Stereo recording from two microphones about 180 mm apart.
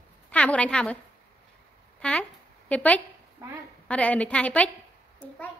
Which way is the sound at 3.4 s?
15° right (ahead or behind).